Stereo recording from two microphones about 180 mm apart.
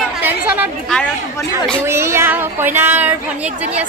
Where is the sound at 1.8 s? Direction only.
15° right (ahead or behind).